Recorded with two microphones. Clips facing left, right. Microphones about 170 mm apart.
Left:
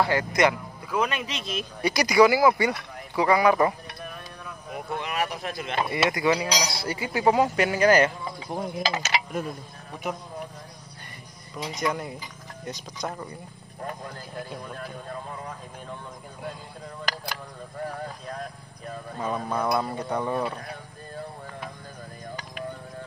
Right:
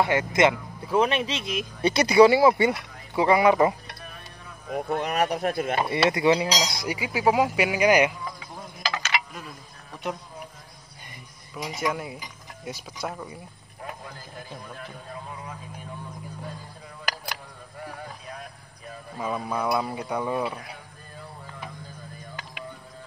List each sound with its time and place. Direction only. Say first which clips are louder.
0.0 s speech: right 1 dB; 20° right (ahead or behind)
4.7 s speech: right 5 dB; 45° right (ahead or behind)
5.9 s speech: right 2 dB; 25° right (ahead or behind)
9.0 s speech: left 3 dB; 40° left (ahead or behind)
11.5 s speech: even; 5° right (ahead or behind)
19.1 s speech: even; 5° right (ahead or behind)